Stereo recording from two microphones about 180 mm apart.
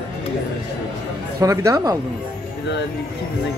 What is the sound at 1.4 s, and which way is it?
Speech, 15° right (ahead or behind).